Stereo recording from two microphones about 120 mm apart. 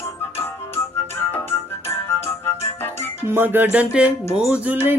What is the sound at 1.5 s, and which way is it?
Music, 20° left (ahead or behind).